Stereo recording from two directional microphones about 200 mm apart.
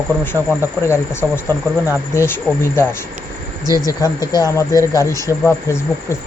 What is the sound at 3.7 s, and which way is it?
Speech, 20° left (ahead or behind).